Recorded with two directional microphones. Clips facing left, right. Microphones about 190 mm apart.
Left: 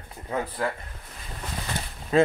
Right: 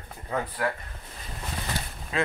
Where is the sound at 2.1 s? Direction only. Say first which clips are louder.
Left 8 dB; 40° left (ahead or behind).